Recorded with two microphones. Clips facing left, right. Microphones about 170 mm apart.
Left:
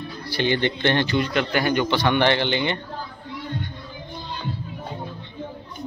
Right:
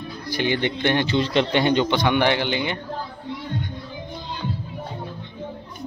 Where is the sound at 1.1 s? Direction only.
30° right (ahead or behind); by 2.8 s 5° right (ahead or behind).